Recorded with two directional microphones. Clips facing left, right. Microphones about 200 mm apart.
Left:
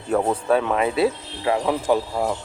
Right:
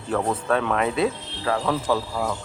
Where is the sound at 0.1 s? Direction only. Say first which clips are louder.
Left 3 dB; 15° left (ahead or behind).